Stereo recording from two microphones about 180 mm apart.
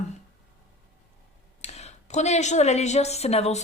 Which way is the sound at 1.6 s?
35° left (ahead or behind).